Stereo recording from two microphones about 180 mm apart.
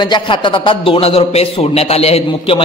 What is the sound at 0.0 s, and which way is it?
A man's voice, 25° left (ahead or behind).